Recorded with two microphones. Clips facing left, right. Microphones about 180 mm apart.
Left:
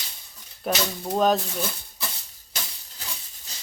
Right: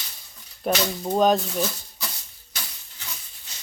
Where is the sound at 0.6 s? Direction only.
Centre (ahead or behind).